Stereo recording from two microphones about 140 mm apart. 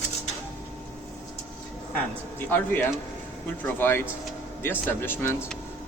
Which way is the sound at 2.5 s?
15° left (ahead or behind).